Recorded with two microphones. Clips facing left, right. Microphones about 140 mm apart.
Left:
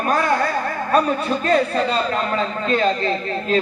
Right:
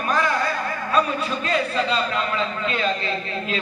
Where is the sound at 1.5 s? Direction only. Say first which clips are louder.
Left 5 dB; 45° left (ahead or behind).